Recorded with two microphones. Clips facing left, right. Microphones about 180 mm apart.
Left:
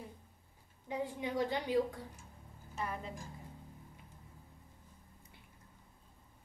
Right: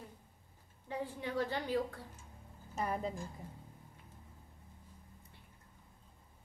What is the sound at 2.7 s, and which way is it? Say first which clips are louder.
Speech: right 4 dB; 40° right (ahead or behind).